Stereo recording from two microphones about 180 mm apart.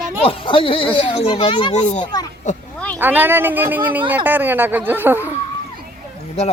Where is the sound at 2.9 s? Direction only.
10° right (ahead or behind).